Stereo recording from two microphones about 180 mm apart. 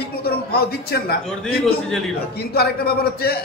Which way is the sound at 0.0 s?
60° left (ahead or behind).